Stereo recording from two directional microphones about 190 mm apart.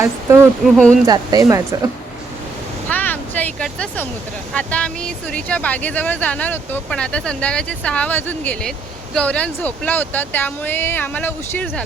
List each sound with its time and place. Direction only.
0.6 s speech: 5° left (ahead or behind)
1.0 s speech: 20° right (ahead or behind)
2.9 s a sound: 10° left (ahead or behind)
4.5 s speech: 5° left (ahead or behind)